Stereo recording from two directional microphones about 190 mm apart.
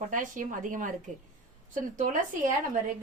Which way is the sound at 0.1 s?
45° right (ahead or behind).